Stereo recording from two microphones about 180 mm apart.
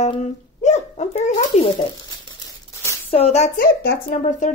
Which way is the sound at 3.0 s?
35° left (ahead or behind).